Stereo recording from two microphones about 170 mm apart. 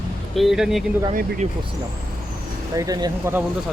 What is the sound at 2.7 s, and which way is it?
Speech, 20° right (ahead or behind).